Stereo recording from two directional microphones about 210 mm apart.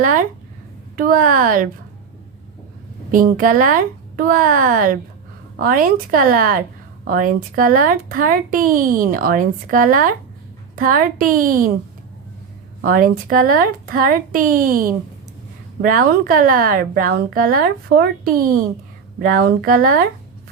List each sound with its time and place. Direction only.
0.0 s speech: 40° right (ahead or behind)
3.1 s speech: 40° right (ahead or behind)
12.8 s speech: 40° right (ahead or behind)
19.2 s speech: 45° right (ahead or behind)